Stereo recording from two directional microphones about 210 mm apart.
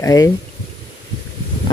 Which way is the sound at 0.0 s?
15° left (ahead or behind).